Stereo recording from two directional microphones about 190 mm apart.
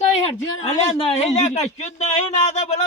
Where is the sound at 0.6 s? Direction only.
30° left (ahead or behind).